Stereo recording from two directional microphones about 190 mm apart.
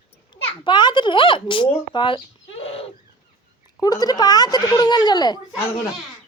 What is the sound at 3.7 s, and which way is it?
Speech, 20° left (ahead or behind).